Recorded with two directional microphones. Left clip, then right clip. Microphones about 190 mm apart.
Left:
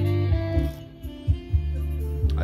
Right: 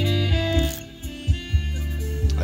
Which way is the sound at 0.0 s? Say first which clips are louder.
Right 5 dB; 45° right (ahead or behind).